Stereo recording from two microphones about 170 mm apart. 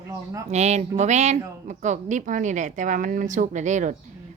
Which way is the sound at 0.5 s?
40° right (ahead or behind).